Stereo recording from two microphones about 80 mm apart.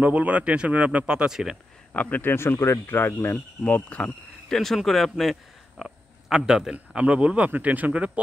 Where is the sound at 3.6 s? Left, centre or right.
Centre.